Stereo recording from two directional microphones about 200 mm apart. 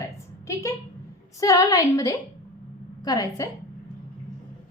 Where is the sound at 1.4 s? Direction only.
15° left (ahead or behind).